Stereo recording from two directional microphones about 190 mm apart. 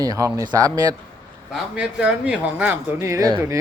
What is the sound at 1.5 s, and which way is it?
Speech, 5° right (ahead or behind).